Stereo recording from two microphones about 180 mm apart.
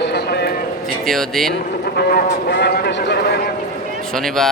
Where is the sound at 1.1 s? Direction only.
Centre (ahead or behind).